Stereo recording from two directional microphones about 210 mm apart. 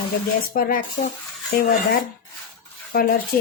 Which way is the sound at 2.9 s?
45° left (ahead or behind).